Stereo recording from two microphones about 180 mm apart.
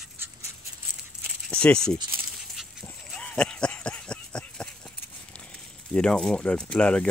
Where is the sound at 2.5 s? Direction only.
Centre (ahead or behind).